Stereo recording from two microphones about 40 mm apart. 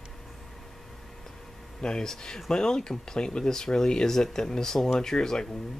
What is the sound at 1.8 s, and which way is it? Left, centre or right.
Speech, centre.